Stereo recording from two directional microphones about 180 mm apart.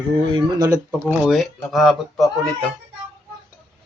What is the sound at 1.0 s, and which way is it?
Speech, 5° right (ahead or behind).